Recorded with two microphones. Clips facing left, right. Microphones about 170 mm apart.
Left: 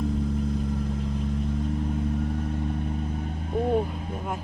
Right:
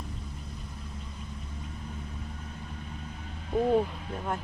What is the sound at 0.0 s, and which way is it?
Vehicle, 90° left.